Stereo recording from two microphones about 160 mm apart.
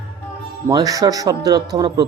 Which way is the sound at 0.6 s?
20° right (ahead or behind).